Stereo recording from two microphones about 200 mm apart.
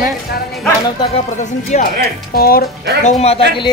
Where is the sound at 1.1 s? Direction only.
35° left (ahead or behind).